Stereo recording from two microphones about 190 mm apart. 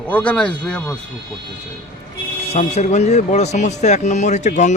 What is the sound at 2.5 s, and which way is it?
Speech, 35° left (ahead or behind).